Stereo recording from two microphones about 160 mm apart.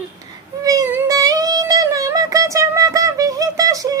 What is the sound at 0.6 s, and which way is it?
Music, 20° right (ahead or behind).